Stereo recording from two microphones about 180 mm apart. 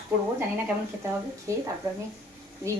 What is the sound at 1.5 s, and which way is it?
Speech, 15° right (ahead or behind).